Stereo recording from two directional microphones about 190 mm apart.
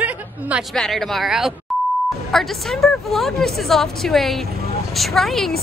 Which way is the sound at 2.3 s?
Centre (ahead or behind).